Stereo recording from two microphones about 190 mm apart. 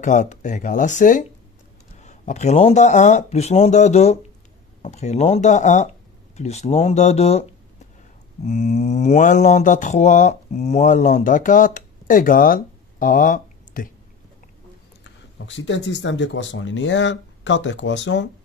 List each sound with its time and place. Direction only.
0.0 s speech: 40° left (ahead or behind)
8.5 s speech: 35° left (ahead or behind)
15.0 s speech: 75° left (ahead or behind)